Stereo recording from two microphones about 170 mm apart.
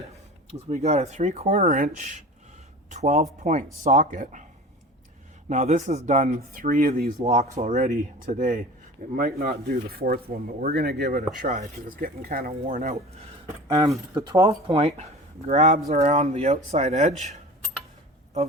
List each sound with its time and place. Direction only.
0.5 s speech: 45° right (ahead or behind)
5.5 s speech: 45° right (ahead or behind); by 11.2 s 70° right (ahead or behind)
11.3 s speech: 55° right (ahead or behind)
13.7 s speech: 25° right (ahead or behind); by 17.3 s 45° right (ahead or behind)